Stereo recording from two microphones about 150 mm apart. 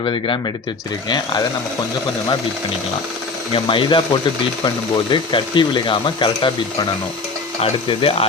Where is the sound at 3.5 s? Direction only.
35° left (ahead or behind).